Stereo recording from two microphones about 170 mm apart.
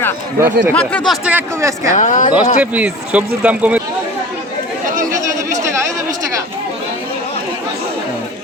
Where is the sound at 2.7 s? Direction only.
10° right (ahead or behind).